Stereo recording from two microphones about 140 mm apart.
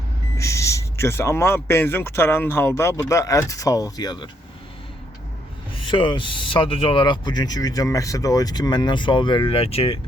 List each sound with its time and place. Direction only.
0.3 s speech: 20° left (ahead or behind)
5.7 s speech: 35° left (ahead or behind)